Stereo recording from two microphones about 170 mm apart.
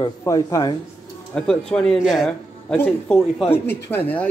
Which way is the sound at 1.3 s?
5° left (ahead or behind).